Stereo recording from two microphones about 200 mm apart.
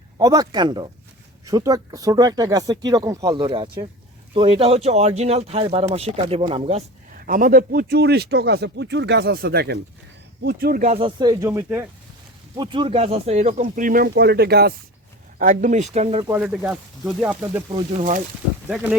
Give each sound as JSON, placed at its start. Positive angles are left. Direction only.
{"t": 0.2, "sound": "speech", "side_deg": -20}
{"t": 7.3, "sound": "speech", "side_deg": -45}
{"t": 15.4, "sound": "speech", "side_deg": -40}
{"t": 16.2, "sound": "speech", "side_deg": -15}
{"t": 16.6, "sound": "speech", "side_deg": -5}
{"t": 17.7, "sound": "speech", "side_deg": -35}
{"t": 18.7, "sound": "speech", "side_deg": -5}